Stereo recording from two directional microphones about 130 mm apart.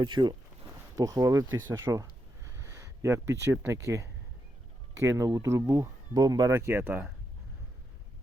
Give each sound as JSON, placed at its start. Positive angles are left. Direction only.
{"t": 0.2, "sound": "speech", "side_deg": -20}